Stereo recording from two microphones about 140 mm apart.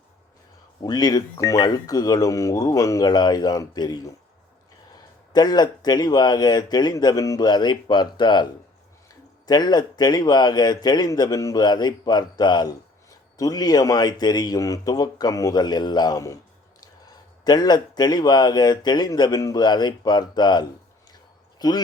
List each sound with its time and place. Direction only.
0.8 s speech: 30° left (ahead or behind)
5.3 s speech: 30° left (ahead or behind)
9.5 s speech: 30° left (ahead or behind)